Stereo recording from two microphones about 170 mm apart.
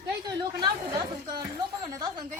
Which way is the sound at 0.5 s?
25° right (ahead or behind).